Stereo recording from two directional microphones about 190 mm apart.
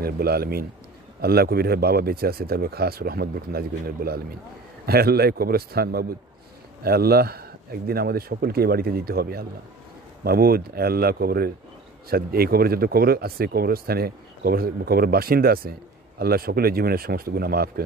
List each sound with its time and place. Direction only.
0.0 s speech: 55° right (ahead or behind)